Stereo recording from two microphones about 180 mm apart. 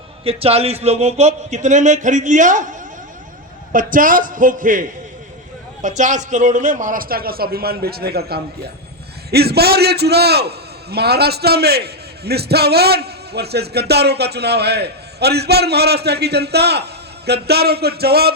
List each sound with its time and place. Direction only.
0.3 s a man's voice: 35° right (ahead or behind)
3.7 s a man's voice: 50° right (ahead or behind)